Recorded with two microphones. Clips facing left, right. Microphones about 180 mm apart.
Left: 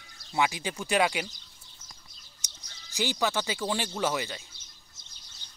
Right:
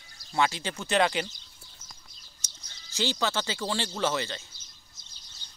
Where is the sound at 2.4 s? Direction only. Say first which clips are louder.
Left 1 dB; 15° left (ahead or behind).